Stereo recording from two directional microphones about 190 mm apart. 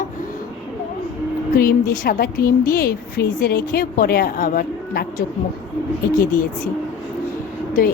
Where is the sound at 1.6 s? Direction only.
45° left (ahead or behind).